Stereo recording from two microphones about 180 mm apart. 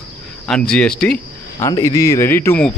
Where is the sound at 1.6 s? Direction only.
20° left (ahead or behind).